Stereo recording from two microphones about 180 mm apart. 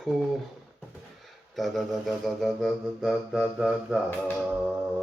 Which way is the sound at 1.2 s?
Centre (ahead or behind).